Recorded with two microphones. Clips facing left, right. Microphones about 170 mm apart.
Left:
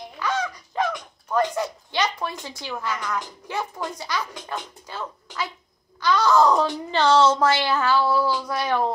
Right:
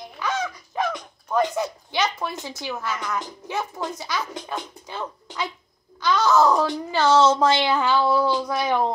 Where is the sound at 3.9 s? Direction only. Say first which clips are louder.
Left 2 dB; 10° left (ahead or behind).